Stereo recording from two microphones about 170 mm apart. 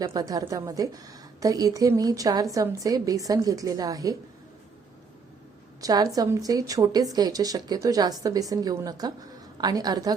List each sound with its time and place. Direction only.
0.0 s a woman's voice: 20° right (ahead or behind)
5.8 s a woman's voice: 25° right (ahead or behind)